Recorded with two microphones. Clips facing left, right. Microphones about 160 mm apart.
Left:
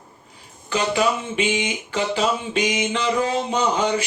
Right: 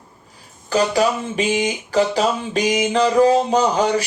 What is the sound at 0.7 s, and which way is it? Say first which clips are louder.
Speech: right 3 dB; 40° right (ahead or behind).